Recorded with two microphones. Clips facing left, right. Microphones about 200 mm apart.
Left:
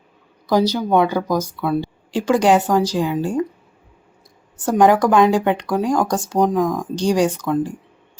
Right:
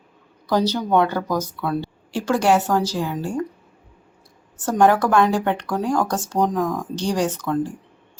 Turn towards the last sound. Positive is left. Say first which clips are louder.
# left 3 dB
turn(degrees=15)  # may be behind; listen again after turning